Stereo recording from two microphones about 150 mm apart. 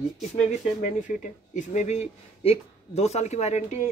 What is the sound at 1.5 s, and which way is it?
Speech, 50° left (ahead or behind).